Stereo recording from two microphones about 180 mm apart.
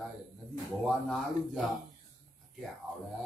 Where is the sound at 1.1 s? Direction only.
Centre (ahead or behind).